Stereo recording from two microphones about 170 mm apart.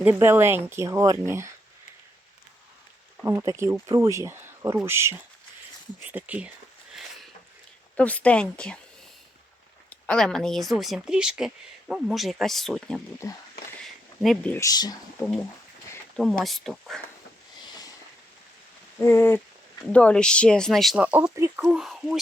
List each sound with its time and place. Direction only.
0.0 s speech: 15° right (ahead or behind)
3.2 s speech: 15° right (ahead or behind)
7.9 s speech: 10° left (ahead or behind)
9.9 s speech: 5° left (ahead or behind)
13.8 s a sound: centre (ahead or behind)
14.5 s speech: 20° left (ahead or behind)
15.2 s speech: 5° left (ahead or behind)
18.9 s speech: 15° left (ahead or behind); by 21.6 s 15° right (ahead or behind)
21.6 s speech: centre (ahead or behind)